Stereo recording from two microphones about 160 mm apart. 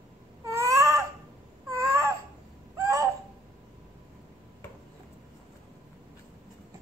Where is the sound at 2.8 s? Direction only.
20° right (ahead or behind).